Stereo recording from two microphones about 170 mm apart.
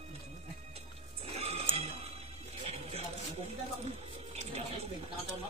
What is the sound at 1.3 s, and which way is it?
Music, 40° right (ahead or behind).